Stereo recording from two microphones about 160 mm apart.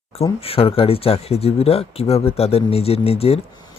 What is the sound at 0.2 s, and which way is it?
Speech, 40° left (ahead or behind).